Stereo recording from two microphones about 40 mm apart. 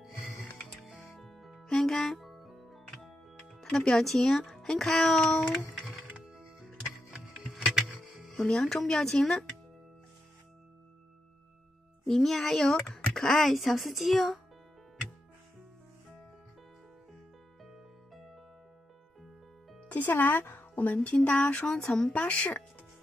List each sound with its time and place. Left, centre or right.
0.0 s music: centre
1.8 s speech: centre
2.1 s music: centre
3.7 s speech: centre
5.2 s a sound: left
5.8 s music: centre
7.5 s music: centre
8.1 s music: centre
8.5 s speech: centre
12.1 s speech: centre
17.6 s music: centre
19.9 s speech: left
21.0 s a sound: left